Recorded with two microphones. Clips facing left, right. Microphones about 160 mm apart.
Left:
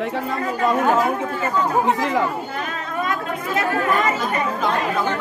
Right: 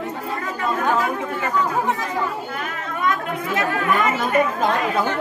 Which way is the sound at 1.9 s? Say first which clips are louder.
Left 5 dB; 90° left.